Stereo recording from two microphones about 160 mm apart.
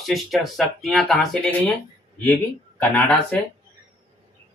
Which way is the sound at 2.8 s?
10° left (ahead or behind).